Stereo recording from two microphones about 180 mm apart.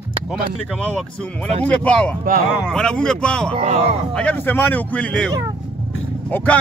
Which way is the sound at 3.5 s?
40° right (ahead or behind).